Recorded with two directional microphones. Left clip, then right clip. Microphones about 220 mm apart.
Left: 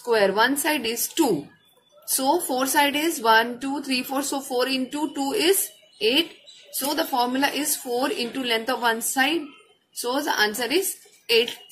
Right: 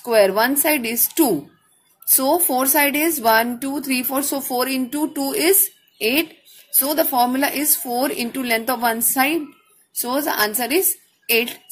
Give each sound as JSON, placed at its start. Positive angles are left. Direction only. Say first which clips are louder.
{"t": 0.1, "sound": "a woman's voice", "louder": "right 4 dB", "side_deg": -35}